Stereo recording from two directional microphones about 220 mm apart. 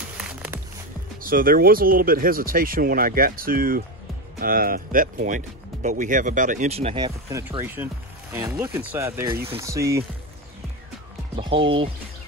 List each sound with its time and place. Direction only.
0.2 s music: 5° right (ahead or behind)
1.2 s speech: 40° right (ahead or behind)
7.2 s speech: 15° right (ahead or behind)
11.3 s speech: 20° right (ahead or behind)